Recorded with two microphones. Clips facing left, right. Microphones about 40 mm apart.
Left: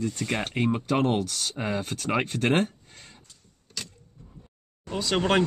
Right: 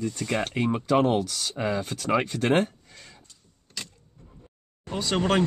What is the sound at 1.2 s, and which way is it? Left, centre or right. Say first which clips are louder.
Speech: right 2 dB; left.